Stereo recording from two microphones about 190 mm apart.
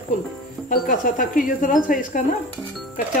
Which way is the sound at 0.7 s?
45° left (ahead or behind).